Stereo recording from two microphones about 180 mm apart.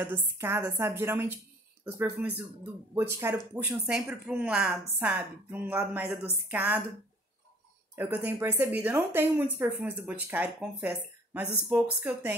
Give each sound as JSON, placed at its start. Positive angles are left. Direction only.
{"t": 0.0, "sound": "speech", "side_deg": -15}
{"t": 7.9, "sound": "speech", "side_deg": -10}